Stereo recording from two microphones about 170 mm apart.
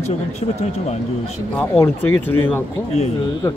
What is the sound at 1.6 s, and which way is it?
Speech, 10° left (ahead or behind).